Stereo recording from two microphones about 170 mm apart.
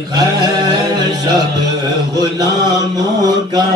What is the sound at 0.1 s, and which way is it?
Music, 25° right (ahead or behind).